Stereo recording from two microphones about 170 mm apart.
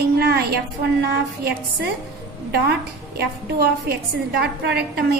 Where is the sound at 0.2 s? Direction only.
70° right (ahead or behind).